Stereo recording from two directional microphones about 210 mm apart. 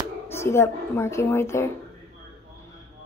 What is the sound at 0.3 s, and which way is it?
Speech, 10° left (ahead or behind).